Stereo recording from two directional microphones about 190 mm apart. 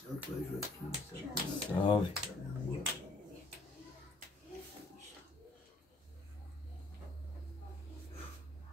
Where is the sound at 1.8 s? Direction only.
25° left (ahead or behind).